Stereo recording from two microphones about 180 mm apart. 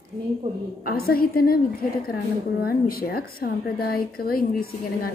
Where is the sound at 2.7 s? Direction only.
55° left (ahead or behind).